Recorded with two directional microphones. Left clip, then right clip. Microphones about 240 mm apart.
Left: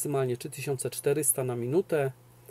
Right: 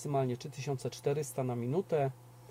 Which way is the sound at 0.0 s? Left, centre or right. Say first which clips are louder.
Left 4 dB; centre.